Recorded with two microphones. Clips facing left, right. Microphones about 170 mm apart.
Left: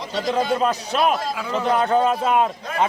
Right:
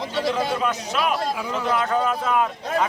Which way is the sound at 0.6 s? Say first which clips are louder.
Left 4 dB; 35° left (ahead or behind).